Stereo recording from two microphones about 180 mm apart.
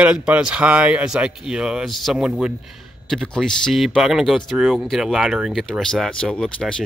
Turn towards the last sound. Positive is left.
turn(degrees=5)  # may be behind; listen again after turning